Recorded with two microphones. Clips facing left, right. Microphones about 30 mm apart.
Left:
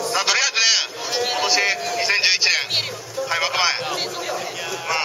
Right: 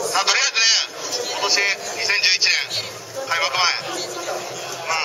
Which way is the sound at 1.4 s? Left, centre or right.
Centre.